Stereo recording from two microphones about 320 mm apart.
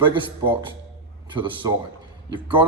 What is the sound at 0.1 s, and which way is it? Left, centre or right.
A man's voice, centre.